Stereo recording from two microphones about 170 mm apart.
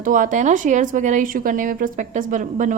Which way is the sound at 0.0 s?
50° right (ahead or behind).